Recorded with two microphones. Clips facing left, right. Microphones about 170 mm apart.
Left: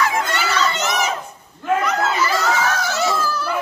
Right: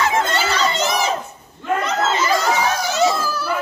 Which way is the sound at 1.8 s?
25° right (ahead or behind).